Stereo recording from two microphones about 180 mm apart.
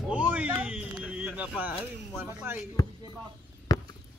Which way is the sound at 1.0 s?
10° right (ahead or behind).